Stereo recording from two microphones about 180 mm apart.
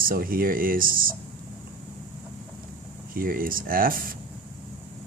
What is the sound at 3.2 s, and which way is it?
Speech, 55° right (ahead or behind).